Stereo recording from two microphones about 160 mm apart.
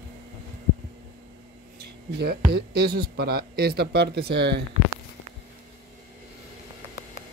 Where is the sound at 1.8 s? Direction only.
90° right.